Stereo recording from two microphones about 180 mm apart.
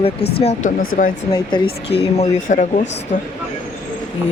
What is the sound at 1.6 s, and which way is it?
Speech, 65° left (ahead or behind).